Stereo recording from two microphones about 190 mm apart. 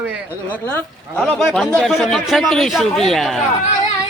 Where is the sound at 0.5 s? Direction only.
10° left (ahead or behind).